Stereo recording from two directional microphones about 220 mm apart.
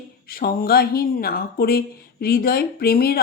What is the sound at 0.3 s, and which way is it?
A woman's voice, 40° left (ahead or behind).